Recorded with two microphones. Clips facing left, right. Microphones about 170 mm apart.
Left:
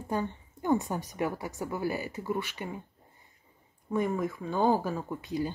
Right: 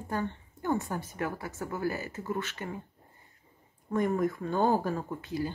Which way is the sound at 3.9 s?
5° left (ahead or behind).